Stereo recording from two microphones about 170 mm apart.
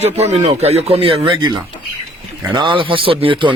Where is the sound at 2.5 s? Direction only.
30° right (ahead or behind).